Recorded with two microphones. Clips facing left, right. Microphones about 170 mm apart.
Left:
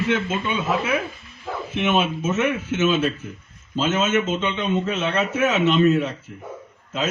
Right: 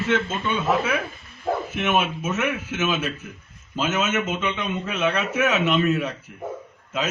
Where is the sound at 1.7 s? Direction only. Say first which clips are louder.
Left 6 dB; 25° left (ahead or behind).